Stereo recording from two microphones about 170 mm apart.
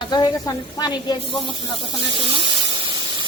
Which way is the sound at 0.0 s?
25° left (ahead or behind).